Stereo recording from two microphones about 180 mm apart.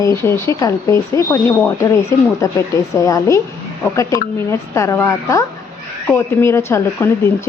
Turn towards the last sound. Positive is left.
turn(degrees=15)  # may be behind; listen again after turning